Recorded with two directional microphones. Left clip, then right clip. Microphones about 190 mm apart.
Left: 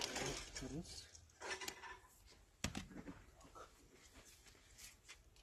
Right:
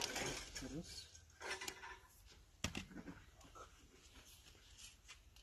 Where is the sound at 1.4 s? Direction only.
40° right (ahead or behind).